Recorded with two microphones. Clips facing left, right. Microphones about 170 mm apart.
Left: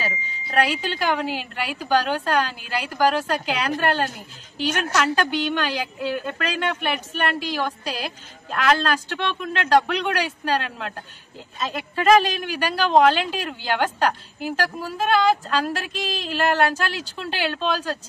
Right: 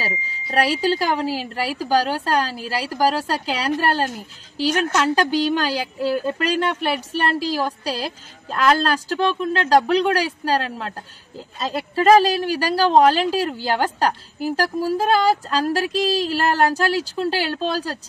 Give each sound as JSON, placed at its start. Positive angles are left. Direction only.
{"t": 0.0, "sound": "a woman's voice", "side_deg": -35}